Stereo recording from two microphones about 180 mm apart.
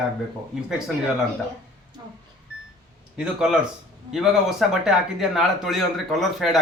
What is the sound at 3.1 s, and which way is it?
Speech, 5° right (ahead or behind).